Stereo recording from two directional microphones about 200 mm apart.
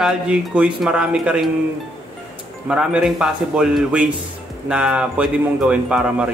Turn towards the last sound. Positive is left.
turn(degrees=-5)  # may be behind; listen again after turning